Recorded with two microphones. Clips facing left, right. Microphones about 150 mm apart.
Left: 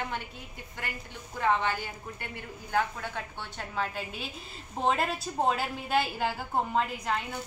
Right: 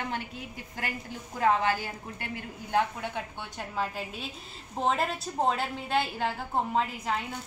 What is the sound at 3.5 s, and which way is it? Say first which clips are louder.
A woman's voice: right 1 dB; 5° right (ahead or behind).